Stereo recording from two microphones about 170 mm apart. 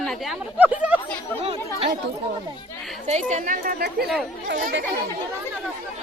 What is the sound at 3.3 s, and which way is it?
Speech, 55° right (ahead or behind).